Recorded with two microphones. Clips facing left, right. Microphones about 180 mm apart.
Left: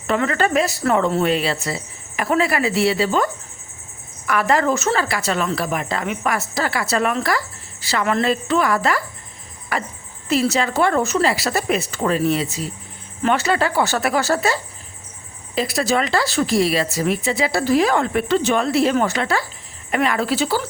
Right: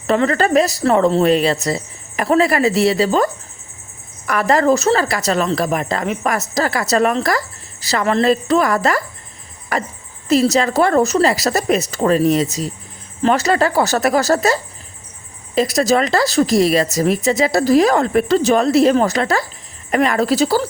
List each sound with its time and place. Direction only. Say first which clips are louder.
0.1 s a woman's voice: right 4 dB; 35° right (ahead or behind)
4.3 s a woman's voice: right 4 dB; 40° right (ahead or behind)